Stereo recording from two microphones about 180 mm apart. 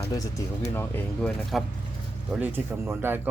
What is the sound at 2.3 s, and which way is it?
Speech, 10° right (ahead or behind).